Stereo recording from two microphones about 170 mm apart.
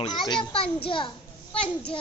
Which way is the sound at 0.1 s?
25° left (ahead or behind).